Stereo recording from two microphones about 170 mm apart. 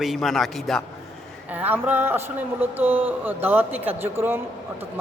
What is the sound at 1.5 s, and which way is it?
Speech, 10° right (ahead or behind).